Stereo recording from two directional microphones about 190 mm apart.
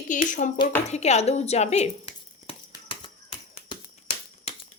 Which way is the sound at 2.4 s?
25° left (ahead or behind).